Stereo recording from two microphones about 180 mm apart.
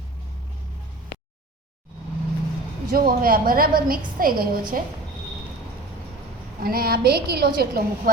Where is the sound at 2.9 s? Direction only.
55° right (ahead or behind).